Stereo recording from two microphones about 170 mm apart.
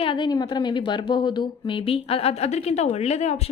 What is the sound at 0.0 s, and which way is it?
A woman's voice, 30° left (ahead or behind).